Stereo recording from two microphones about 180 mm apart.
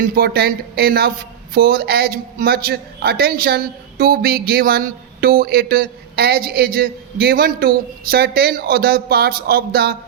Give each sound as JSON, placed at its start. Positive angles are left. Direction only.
{"t": 0.0, "sound": "a man's voice", "side_deg": -60}